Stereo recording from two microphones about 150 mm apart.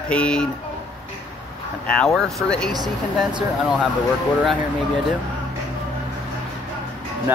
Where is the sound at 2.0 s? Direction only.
5° left (ahead or behind).